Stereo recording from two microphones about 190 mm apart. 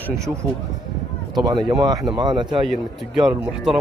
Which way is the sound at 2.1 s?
25° right (ahead or behind).